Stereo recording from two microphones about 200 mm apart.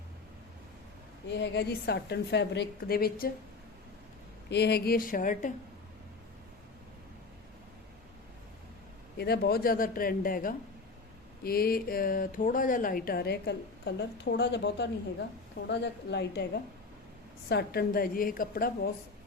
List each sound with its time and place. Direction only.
1.4 s a woman's voice: 55° left (ahead or behind)
4.4 s speech: 55° left (ahead or behind)
9.1 s speech: 55° left (ahead or behind)
17.5 s speech: 55° left (ahead or behind)